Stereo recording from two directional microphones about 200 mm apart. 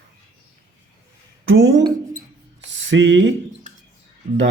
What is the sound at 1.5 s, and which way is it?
Speech, 70° right (ahead or behind).